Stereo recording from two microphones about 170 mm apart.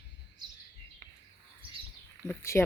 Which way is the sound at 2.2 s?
15° left (ahead or behind).